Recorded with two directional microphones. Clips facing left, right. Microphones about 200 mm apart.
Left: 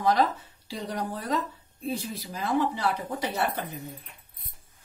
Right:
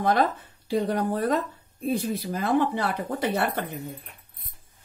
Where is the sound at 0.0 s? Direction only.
55° right (ahead or behind).